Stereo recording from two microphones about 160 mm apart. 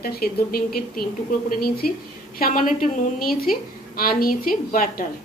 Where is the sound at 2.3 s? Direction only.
60° left (ahead or behind).